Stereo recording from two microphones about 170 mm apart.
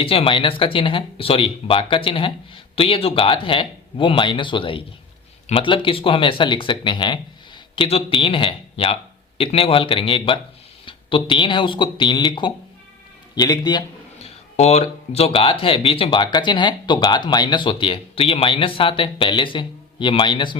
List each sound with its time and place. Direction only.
0.0 s speech: 35° left (ahead or behind)
14.2 s speech: 40° left (ahead or behind)